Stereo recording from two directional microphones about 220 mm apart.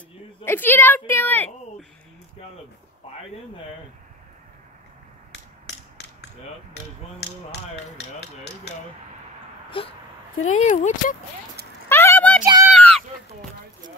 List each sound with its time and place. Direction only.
0.5 s a woman's voice: 10° left (ahead or behind)
9.8 s speech: 25° left (ahead or behind)
11.9 s a sound: 10° left (ahead or behind)